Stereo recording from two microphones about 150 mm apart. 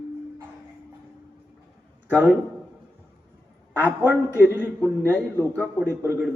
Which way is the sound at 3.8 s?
15° right (ahead or behind).